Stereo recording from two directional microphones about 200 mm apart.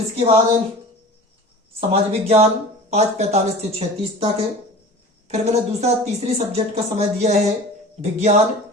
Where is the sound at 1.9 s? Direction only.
30° right (ahead or behind).